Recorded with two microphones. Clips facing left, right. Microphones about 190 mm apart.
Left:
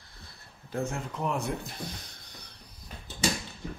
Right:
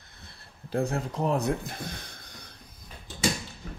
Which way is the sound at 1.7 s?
55° right (ahead or behind).